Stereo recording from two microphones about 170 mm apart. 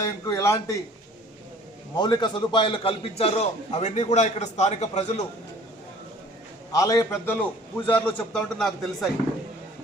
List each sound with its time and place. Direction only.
0.0 s a man's voice: 15° left (ahead or behind)
2.0 s a man's voice: 25° left (ahead or behind); by 5.2 s 40° left (ahead or behind)
6.7 s a man's voice: 20° left (ahead or behind); by 9.0 s centre (ahead or behind)